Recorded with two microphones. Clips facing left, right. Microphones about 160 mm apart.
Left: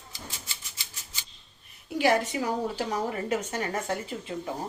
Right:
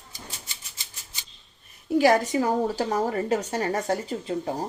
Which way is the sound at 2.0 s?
40° right (ahead or behind).